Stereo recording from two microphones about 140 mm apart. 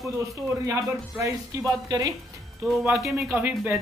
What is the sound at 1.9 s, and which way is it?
Speech, 25° right (ahead or behind).